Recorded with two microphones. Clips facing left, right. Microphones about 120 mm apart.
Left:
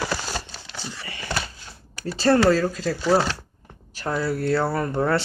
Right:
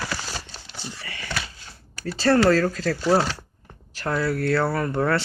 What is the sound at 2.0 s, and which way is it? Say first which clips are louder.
Speech: left 1 dB; 25° left (ahead or behind).